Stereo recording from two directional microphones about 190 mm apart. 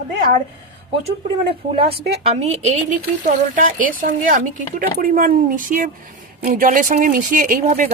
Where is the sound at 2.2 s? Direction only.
35° right (ahead or behind).